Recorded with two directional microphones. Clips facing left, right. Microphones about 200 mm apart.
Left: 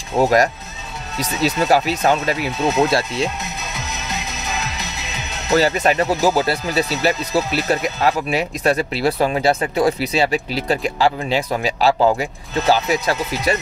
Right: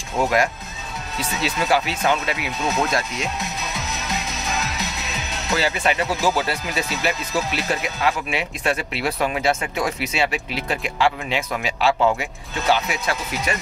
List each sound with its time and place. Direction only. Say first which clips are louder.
0.2 s speech: left 5 dB; 40° left (ahead or behind)
5.5 s speech: left 6 dB; 40° left (ahead or behind)